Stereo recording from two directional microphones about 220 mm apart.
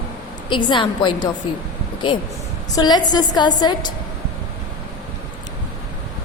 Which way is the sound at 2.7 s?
20° left (ahead or behind).